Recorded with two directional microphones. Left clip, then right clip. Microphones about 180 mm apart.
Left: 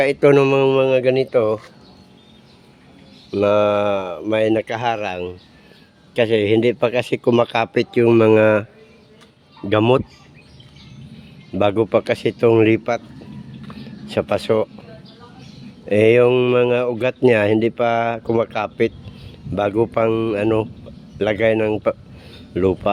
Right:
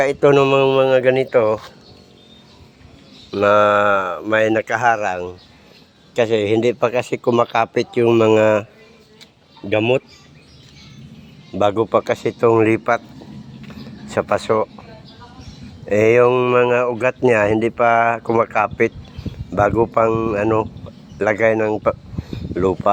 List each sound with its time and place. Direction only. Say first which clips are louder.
0.1 s speech: even; 20° left (ahead or behind)
3.3 s speech: right 3 dB; 15° left (ahead or behind)
4.6 s a man's voice: right 5 dB; 30° left (ahead or behind)
9.6 s speech: left 1 dB; 30° left (ahead or behind)
11.5 s a man's voice: right 1 dB; 30° left (ahead or behind)
14.2 s speech: right 1 dB; 35° left (ahead or behind)
15.9 s a man's voice: even; 40° left (ahead or behind)